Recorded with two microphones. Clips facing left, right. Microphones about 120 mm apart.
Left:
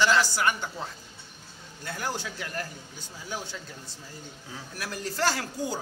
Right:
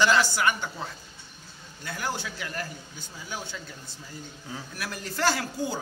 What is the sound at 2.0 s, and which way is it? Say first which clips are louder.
Speech: right 1 dB; 35° left (ahead or behind).